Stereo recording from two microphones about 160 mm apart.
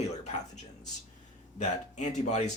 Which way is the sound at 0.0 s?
45° left (ahead or behind).